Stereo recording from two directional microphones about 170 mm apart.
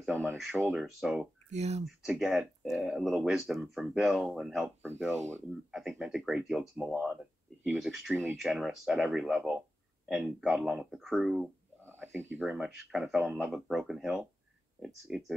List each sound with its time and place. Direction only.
0.0 s speech: 10° right (ahead or behind)
1.5 s speech: 40° right (ahead or behind)
1.9 s speech: 5° right (ahead or behind)
11.8 s a sound: 15° right (ahead or behind)
12.4 s speech: 5° right (ahead or behind)